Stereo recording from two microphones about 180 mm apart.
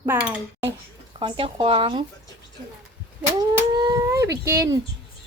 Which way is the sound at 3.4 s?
20° right (ahead or behind).